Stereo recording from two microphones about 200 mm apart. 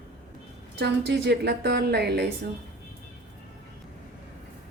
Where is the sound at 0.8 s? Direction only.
55° right (ahead or behind).